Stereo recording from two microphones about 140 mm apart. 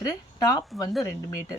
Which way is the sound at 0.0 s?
25° left (ahead or behind).